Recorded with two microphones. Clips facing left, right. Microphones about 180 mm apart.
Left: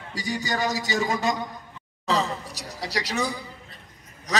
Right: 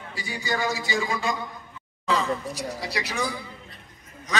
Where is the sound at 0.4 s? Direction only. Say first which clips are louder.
Right 1 dB; 40° left (ahead or behind).